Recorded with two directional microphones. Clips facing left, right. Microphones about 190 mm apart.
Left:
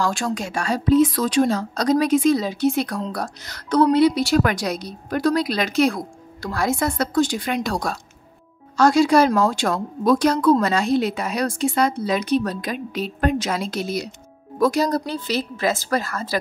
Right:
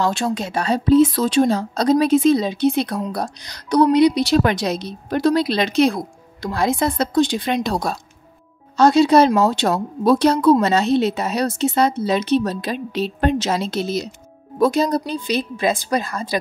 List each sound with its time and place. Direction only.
0.0 s a woman's voice: 25° right (ahead or behind)